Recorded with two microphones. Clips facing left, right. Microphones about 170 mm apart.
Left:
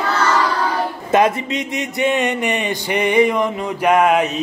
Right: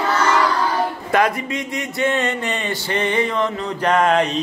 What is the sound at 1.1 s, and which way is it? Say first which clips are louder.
Speech: left 4 dB; 20° left (ahead or behind).